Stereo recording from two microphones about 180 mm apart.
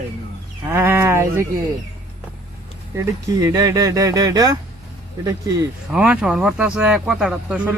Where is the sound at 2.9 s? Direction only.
15° right (ahead or behind).